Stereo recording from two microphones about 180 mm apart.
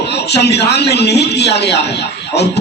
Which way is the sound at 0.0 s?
70° left (ahead or behind).